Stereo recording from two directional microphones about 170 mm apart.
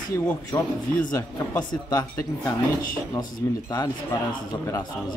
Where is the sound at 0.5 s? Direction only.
25° left (ahead or behind).